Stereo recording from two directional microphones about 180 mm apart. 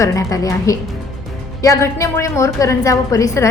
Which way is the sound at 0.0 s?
15° left (ahead or behind).